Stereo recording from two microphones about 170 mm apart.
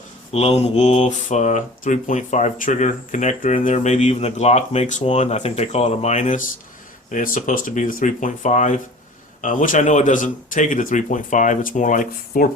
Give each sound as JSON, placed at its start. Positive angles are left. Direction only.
{"t": 0.3, "sound": "speech", "side_deg": 40}